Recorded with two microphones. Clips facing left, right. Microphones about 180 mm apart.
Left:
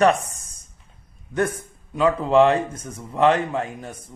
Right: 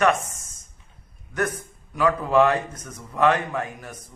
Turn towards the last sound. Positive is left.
turn(degrees=25)  # may be behind; listen again after turning